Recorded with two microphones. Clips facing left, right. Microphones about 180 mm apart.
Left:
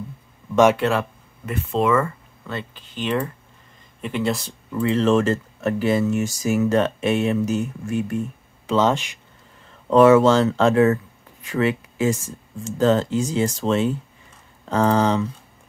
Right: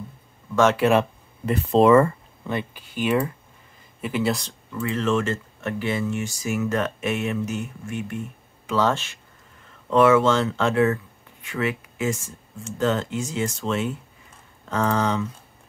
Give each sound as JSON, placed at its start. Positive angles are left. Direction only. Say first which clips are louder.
{"t": 1.4, "sound": "speech", "louder": "right 4 dB", "side_deg": -35}
{"t": 2.4, "sound": "speech", "louder": "right 3 dB", "side_deg": -15}
{"t": 4.7, "sound": "speech", "louder": "left 5 dB", "side_deg": 30}
{"t": 8.6, "sound": "speech", "louder": "left 3 dB", "side_deg": 20}
{"t": 9.8, "sound": "speech", "louder": "left 4 dB", "side_deg": 35}